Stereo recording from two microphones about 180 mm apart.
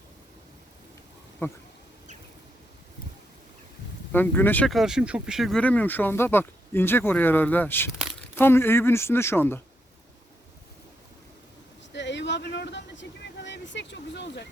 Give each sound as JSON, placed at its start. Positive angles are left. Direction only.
{"t": 1.4, "sound": "speech", "side_deg": 10}
{"t": 4.1, "sound": "speech", "side_deg": 10}
{"t": 11.9, "sound": "a sound", "side_deg": 80}